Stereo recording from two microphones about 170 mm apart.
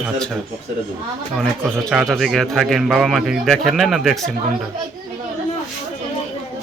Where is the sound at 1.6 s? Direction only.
5° right (ahead or behind).